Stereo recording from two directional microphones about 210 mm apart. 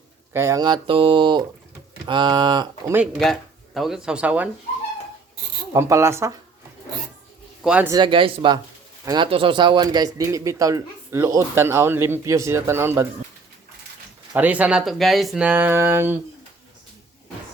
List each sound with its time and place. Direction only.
0.3 s speech: 15° right (ahead or behind)
2.9 s speech: centre (ahead or behind)
5.7 s a man's voice: 15° right (ahead or behind)
7.6 s speech: 5° right (ahead or behind)
7.9 s a man's voice: 25° right (ahead or behind)
14.3 s a man's voice: 5° right (ahead or behind)